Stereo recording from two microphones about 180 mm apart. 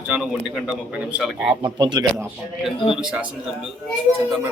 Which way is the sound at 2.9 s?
5° right (ahead or behind).